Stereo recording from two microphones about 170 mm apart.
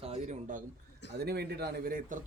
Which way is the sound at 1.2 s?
70° right (ahead or behind).